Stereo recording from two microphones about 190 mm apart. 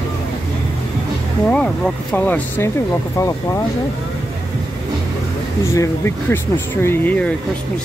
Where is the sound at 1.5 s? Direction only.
5° left (ahead or behind).